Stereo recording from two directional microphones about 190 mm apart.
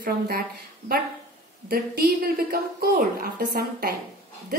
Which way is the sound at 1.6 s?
50° right (ahead or behind).